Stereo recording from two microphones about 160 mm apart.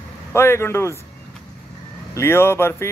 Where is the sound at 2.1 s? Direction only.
15° left (ahead or behind).